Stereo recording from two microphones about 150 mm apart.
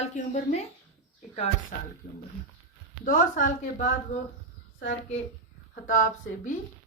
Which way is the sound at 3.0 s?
65° left (ahead or behind).